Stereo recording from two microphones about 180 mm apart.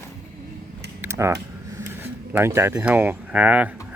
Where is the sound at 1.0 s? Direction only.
15° right (ahead or behind).